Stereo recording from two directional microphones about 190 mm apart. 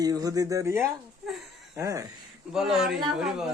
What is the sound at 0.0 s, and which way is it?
Speech, 20° right (ahead or behind).